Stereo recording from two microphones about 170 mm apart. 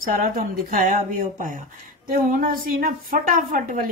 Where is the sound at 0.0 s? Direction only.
55° right (ahead or behind).